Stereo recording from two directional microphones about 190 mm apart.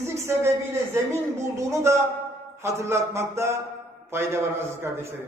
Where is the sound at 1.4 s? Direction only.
15° right (ahead or behind).